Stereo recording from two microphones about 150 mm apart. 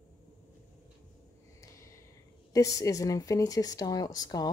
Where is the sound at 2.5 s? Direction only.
20° left (ahead or behind).